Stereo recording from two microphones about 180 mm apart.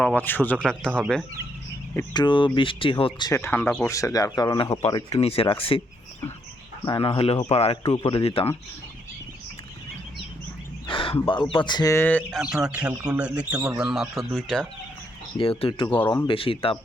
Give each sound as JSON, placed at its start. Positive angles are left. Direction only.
{"t": 0.0, "sound": "speech", "side_deg": 10}
{"t": 2.1, "sound": "speech", "side_deg": 25}
{"t": 6.8, "sound": "speech", "side_deg": 25}
{"t": 10.8, "sound": "speech", "side_deg": 30}
{"t": 12.4, "sound": "speech", "side_deg": -5}
{"t": 15.4, "sound": "speech", "side_deg": 30}